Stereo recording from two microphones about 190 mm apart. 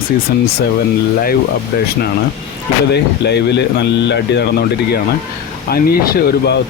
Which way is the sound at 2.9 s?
60° left (ahead or behind).